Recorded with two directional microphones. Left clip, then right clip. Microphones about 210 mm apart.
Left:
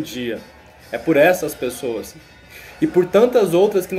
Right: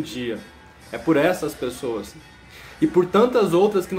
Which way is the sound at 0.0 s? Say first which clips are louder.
Left 3 dB; 5° right (ahead or behind).